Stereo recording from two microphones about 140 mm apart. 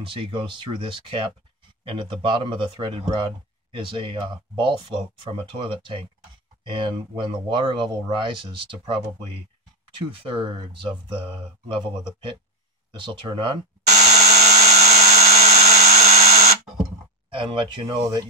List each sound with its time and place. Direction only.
0.0 s speech: 40° right (ahead or behind)
13.8 s dental drill: 55° right (ahead or behind)
17.3 s speech: 35° right (ahead or behind)